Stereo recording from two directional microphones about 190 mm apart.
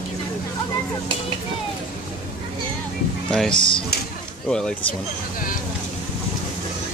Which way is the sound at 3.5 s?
25° left (ahead or behind).